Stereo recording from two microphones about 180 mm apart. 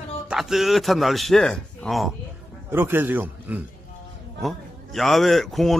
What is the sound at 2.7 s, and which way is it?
A man's voice, 10° right (ahead or behind).